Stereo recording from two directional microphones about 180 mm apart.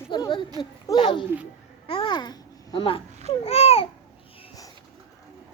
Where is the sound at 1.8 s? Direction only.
30° left (ahead or behind).